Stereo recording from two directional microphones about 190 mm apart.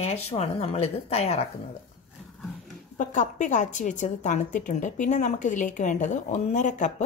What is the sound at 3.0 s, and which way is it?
A woman's voice, 40° left (ahead or behind).